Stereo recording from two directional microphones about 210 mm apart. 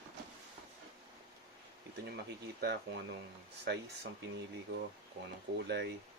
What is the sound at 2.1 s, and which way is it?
Speech, 50° right (ahead or behind).